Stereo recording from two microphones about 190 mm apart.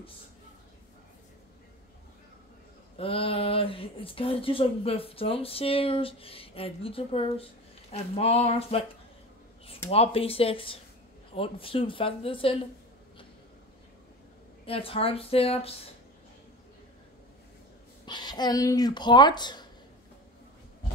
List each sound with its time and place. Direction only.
3.0 s speech: 30° left (ahead or behind)
9.8 s speech: 30° left (ahead or behind)
14.7 s speech: 30° left (ahead or behind)
18.0 s speech: 20° left (ahead or behind)